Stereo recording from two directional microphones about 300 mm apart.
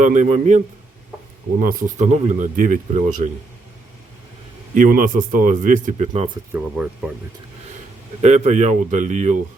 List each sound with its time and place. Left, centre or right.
0.0 s speech: right
1.6 s speech: right
4.7 s speech: right
6.8 s speech: centre
8.2 s speech: right